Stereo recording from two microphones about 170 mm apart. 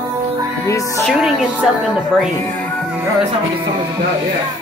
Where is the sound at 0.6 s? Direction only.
20° left (ahead or behind).